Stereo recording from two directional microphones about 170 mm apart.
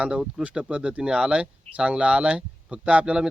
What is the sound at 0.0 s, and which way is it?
Speech, 5° right (ahead or behind).